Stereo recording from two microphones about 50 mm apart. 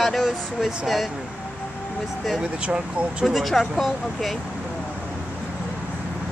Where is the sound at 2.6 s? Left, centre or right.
Centre.